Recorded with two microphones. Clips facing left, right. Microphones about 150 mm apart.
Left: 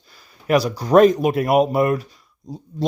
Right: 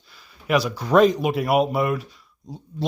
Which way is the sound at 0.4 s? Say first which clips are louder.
Left 3 dB; 40° left (ahead or behind).